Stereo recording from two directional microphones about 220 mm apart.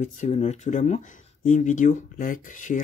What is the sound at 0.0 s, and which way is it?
Speech, 30° left (ahead or behind).